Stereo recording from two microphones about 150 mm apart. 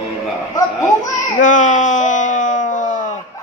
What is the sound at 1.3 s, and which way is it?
Groan, 55° left (ahead or behind).